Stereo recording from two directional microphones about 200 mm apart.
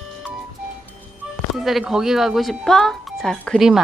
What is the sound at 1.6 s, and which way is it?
A woman's voice, centre (ahead or behind).